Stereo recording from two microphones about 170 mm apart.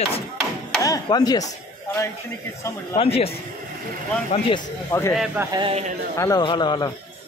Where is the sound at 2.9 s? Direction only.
35° left (ahead or behind).